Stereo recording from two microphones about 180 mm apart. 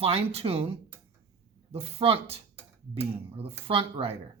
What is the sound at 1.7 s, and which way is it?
Speech, 35° right (ahead or behind).